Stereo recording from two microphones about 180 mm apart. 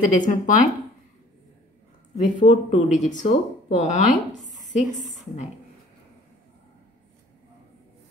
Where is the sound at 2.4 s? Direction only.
40° left (ahead or behind).